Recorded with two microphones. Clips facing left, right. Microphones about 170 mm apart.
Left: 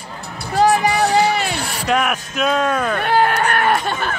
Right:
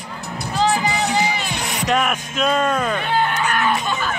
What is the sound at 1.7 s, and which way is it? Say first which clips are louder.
Speech: even; centre (ahead or behind).